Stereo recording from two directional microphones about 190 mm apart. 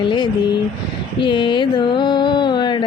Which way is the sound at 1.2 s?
25° left (ahead or behind).